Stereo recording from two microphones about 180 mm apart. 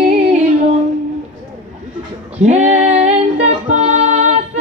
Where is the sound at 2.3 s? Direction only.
40° right (ahead or behind).